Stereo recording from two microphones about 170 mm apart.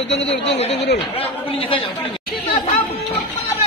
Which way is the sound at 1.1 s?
35° left (ahead or behind).